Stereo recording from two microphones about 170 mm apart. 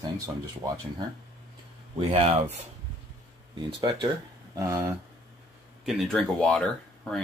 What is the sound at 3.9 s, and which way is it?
Speech, 25° right (ahead or behind).